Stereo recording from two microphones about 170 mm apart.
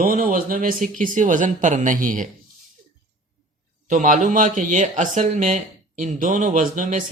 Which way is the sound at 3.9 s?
50° right (ahead or behind).